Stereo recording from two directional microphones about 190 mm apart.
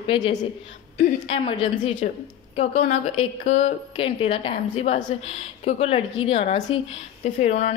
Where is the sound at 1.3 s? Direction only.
35° left (ahead or behind).